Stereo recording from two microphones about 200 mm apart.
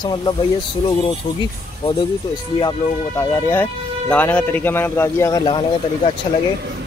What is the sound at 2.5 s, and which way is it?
Speech, 20° left (ahead or behind).